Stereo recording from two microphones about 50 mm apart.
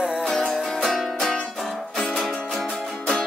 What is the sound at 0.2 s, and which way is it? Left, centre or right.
Music, centre.